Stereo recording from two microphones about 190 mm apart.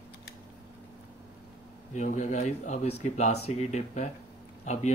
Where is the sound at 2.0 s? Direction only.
40° left (ahead or behind).